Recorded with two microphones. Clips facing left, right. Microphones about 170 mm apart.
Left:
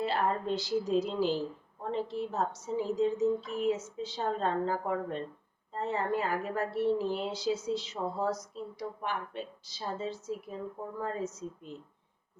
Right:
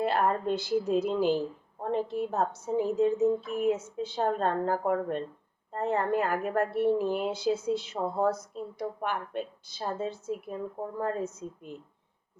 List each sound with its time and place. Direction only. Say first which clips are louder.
0.0 s a woman's voice: right 4 dB; 55° right (ahead or behind)